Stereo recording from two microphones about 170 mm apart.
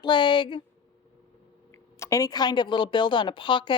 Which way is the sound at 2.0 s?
20° left (ahead or behind).